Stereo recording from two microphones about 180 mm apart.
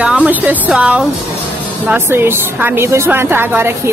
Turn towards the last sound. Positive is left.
turn(degrees=-10)  # may be behind; listen again after turning